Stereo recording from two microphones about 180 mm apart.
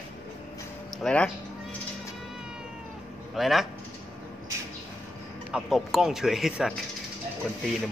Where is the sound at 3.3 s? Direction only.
Centre (ahead or behind).